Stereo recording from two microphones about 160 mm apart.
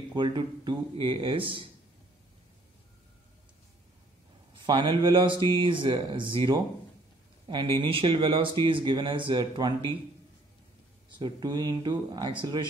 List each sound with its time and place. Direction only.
0.1 s speech: 25° right (ahead or behind)
4.6 s speech: 30° right (ahead or behind)
11.1 s speech: 30° right (ahead or behind)